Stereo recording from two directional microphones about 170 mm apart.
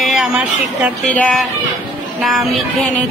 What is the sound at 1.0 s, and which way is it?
Speech, 5° left (ahead or behind).